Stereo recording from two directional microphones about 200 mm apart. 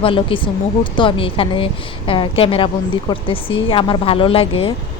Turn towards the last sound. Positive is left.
turn(degrees=30)  # may be behind; listen again after turning